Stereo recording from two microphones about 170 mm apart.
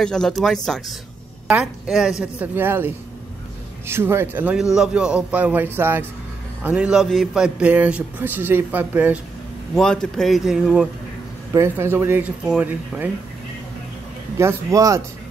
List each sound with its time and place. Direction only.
0.0 s a man's voice: 5° left (ahead or behind)
9.8 s speech: 5° left (ahead or behind)
11.5 s a man's voice: 15° right (ahead or behind)
14.4 s speech: 20° right (ahead or behind)